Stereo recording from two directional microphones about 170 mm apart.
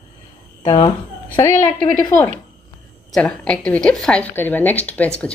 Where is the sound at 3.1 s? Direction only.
5° left (ahead or behind).